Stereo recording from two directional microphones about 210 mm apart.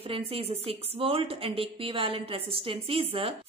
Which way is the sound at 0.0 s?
25° right (ahead or behind).